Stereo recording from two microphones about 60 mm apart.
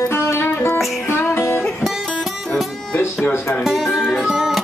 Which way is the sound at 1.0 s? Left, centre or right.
Left.